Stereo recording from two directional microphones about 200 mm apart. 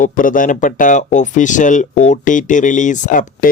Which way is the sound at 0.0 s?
40° left (ahead or behind).